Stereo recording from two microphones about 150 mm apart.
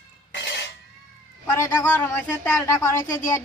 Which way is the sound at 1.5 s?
15° left (ahead or behind).